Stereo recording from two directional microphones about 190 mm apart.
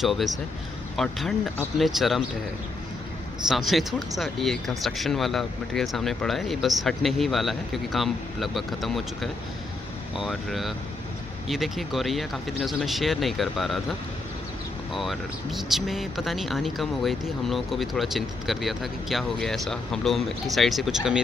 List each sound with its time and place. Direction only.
0.0 s speech: centre (ahead or behind)
3.4 s speech: centre (ahead or behind)
15.0 s speech: centre (ahead or behind)